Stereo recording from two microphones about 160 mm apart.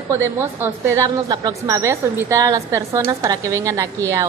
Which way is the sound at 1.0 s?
25° right (ahead or behind).